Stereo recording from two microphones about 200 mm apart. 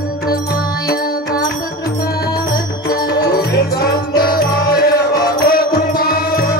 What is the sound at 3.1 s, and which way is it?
Music, 50° left (ahead or behind).